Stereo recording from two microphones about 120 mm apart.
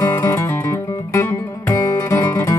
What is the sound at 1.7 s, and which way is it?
Music, 25° left (ahead or behind).